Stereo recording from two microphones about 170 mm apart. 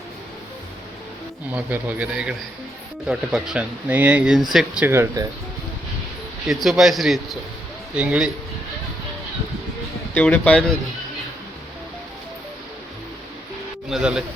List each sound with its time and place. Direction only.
1.5 s a man's voice: 10° right (ahead or behind)
4.8 s a man's voice: 15° right (ahead or behind)
6.5 s a man's voice: centre (ahead or behind)
10.2 s speech: 10° left (ahead or behind)
13.9 s speech: 5° right (ahead or behind)